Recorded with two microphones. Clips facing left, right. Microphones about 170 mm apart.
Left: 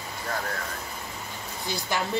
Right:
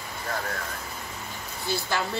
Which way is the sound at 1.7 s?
15° left (ahead or behind).